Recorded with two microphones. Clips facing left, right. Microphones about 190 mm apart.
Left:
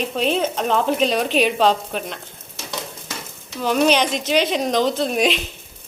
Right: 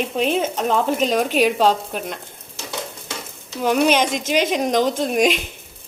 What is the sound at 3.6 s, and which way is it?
Speech, 10° right (ahead or behind).